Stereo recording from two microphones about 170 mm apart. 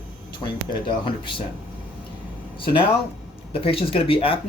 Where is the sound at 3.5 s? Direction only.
35° left (ahead or behind).